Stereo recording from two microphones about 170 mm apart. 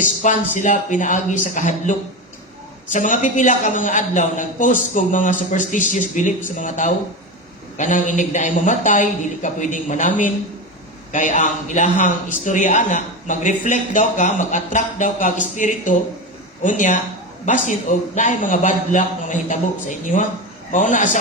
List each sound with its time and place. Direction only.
0.0 s a man's voice: 50° left (ahead or behind)